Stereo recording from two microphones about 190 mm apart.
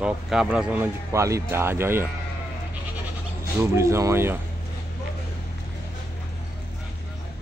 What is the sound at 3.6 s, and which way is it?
Speech, 15° right (ahead or behind).